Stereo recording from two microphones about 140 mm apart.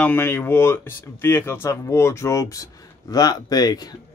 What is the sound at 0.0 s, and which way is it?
Speech, 15° left (ahead or behind).